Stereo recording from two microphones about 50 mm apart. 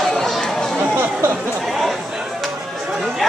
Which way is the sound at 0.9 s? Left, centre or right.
Right.